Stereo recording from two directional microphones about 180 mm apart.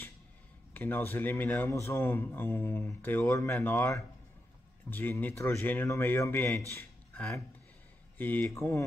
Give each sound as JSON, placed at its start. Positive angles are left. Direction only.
{"t": 0.7, "sound": "speech", "side_deg": 15}